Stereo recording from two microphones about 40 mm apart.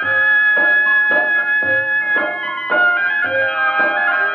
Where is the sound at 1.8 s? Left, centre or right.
Left.